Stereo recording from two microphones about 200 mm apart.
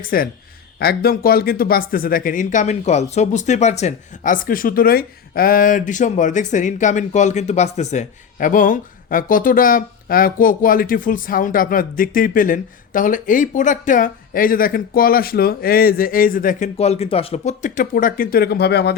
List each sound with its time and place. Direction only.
0.0 s speech: 45° left (ahead or behind)